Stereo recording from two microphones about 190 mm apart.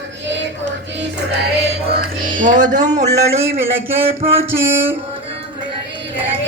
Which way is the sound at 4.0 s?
30° right (ahead or behind).